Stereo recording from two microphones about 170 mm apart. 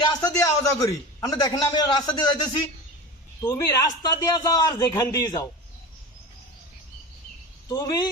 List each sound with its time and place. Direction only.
0.3 s a man's voice: 20° left (ahead or behind)
7.7 s a man's voice: 20° left (ahead or behind)